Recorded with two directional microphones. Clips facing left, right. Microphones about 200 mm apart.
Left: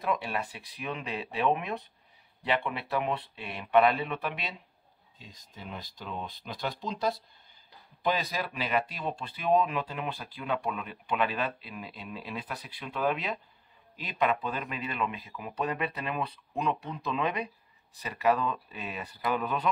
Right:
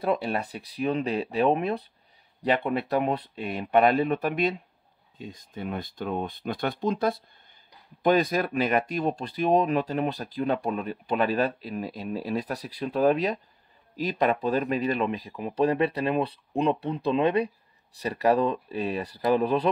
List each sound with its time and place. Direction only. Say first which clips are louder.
0.0 s speech: right 5 dB; 35° right (ahead or behind)